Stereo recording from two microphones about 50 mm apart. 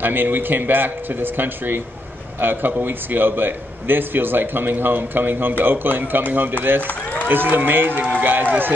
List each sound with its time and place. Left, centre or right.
0.0 s a man's voice: right